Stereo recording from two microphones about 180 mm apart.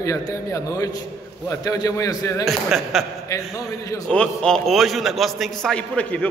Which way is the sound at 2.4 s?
Centre (ahead or behind).